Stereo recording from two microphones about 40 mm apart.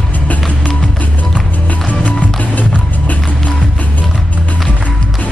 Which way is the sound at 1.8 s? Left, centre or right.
Left.